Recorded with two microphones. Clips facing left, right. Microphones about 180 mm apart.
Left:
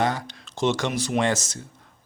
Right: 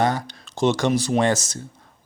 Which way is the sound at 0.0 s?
40° right (ahead or behind).